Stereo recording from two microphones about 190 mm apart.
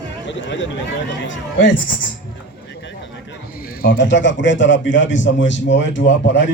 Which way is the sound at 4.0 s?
70° left (ahead or behind).